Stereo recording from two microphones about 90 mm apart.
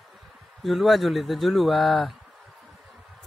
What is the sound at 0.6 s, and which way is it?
Speech, centre (ahead or behind).